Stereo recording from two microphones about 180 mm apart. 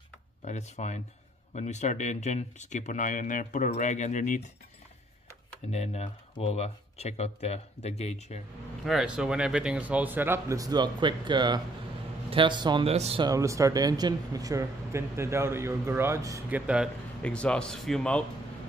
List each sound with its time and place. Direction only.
0.5 s speech: 40° left (ahead or behind)
5.7 s speech: 35° left (ahead or behind)
8.8 s speech: 5° right (ahead or behind); by 13.2 s 35° right (ahead or behind)
13.2 s speech: 20° right (ahead or behind)
17.2 s a man's voice: 5° left (ahead or behind)